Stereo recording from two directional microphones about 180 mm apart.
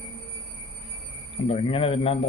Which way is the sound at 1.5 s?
30° left (ahead or behind).